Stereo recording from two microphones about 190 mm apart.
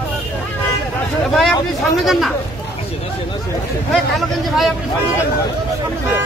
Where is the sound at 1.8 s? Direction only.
Centre (ahead or behind).